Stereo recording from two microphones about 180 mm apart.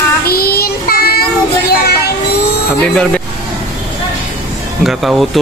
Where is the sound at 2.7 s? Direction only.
5° left (ahead or behind).